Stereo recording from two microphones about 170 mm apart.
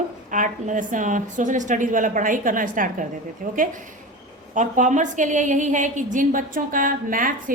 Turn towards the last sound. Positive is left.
turn(degrees=-55)  # may be behind; listen again after turning